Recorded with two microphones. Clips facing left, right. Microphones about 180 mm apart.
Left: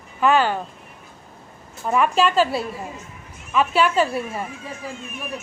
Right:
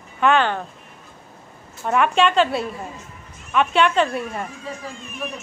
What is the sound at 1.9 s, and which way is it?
Speech, 5° left (ahead or behind).